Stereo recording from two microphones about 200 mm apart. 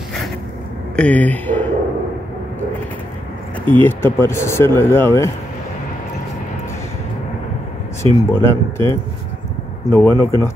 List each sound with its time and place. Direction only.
0.9 s speech: 5° left (ahead or behind)
3.7 s speech: 10° left (ahead or behind)
8.0 s speech: 15° left (ahead or behind)